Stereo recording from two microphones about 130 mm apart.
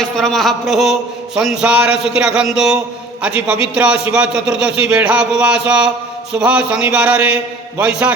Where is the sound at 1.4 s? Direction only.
10° right (ahead or behind).